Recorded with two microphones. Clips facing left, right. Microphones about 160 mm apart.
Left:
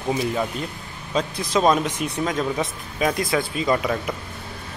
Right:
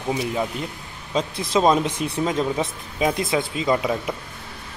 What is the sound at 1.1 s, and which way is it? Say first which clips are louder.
Speech: right 1 dB; 25° right (ahead or behind).